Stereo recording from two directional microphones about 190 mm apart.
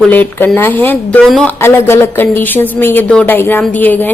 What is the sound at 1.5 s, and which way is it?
Speech, 10° left (ahead or behind).